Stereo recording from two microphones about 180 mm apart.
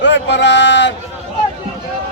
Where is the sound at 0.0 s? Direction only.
80° left.